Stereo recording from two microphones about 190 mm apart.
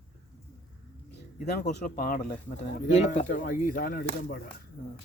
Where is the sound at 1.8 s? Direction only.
45° left (ahead or behind).